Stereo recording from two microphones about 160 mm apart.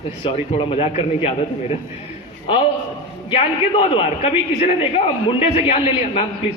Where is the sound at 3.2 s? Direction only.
35° left (ahead or behind).